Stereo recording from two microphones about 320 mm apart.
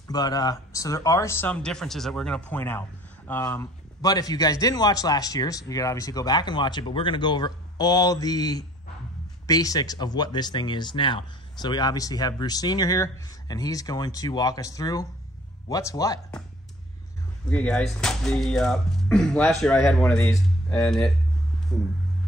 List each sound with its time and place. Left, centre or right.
0.1 s speech: centre
17.5 s speech: centre